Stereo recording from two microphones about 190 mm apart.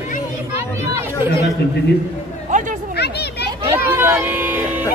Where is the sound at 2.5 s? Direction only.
40° right (ahead or behind).